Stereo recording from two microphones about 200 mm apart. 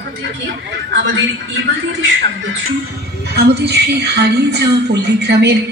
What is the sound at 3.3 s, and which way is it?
A woman's voice, 55° right (ahead or behind).